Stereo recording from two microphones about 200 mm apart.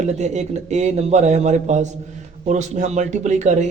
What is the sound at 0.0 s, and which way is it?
Speech, 35° right (ahead or behind).